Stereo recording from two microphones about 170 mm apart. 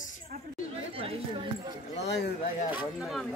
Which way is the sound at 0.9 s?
35° right (ahead or behind).